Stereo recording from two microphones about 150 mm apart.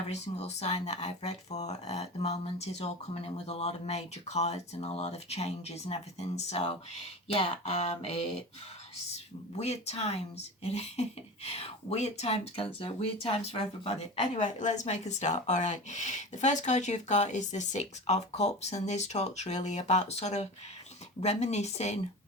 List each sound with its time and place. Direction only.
0.1 s speech: 45° left (ahead or behind)